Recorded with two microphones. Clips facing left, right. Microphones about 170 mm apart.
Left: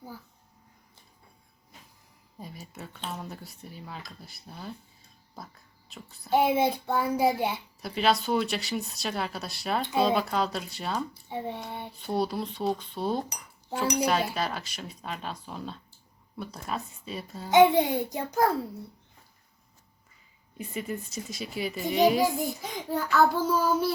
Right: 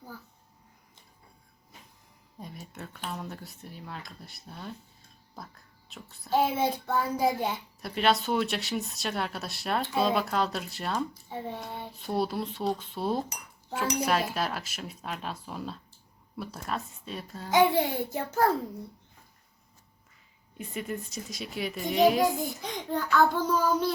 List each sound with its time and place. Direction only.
2.4 s a child's voice: centre (ahead or behind)
6.3 s a child's voice: 10° left (ahead or behind)
7.8 s speech: centre (ahead or behind)
11.1 s a child's voice: 15° left (ahead or behind)
11.9 s speech: centre (ahead or behind)
17.5 s a child's voice: 20° left (ahead or behind)
20.6 s speech: centre (ahead or behind)